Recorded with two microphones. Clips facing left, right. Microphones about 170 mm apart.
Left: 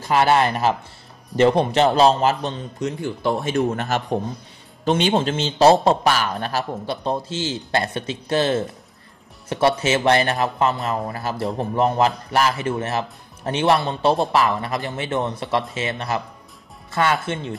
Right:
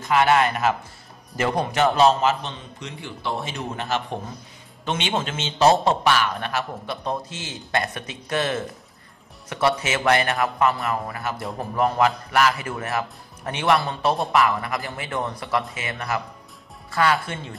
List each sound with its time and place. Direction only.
0.0 s a man's voice: 35° left (ahead or behind)